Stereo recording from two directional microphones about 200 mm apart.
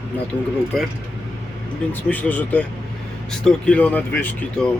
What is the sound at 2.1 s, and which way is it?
Speech, 10° left (ahead or behind).